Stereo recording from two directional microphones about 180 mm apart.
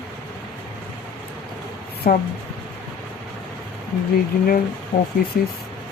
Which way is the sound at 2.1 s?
50° left (ahead or behind).